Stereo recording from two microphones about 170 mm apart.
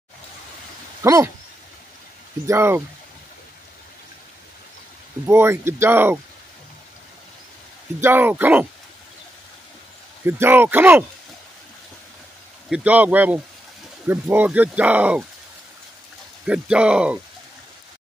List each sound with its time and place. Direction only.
1.0 s speech: 20° right (ahead or behind)
2.4 s speech: 15° right (ahead or behind)
5.3 s speech: 15° right (ahead or behind)
8.0 s speech: 10° right (ahead or behind)
10.2 s speech: 10° right (ahead or behind)
12.6 s speech: 5° right (ahead or behind)
16.4 s speech: 5° right (ahead or behind)